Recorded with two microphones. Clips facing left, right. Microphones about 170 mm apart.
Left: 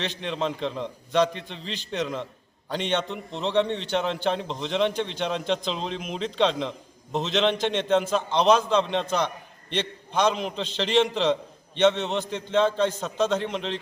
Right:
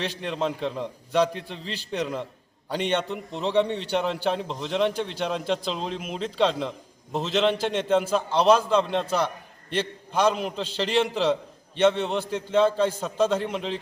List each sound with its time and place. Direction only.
0.0 s a man's voice: 5° right (ahead or behind)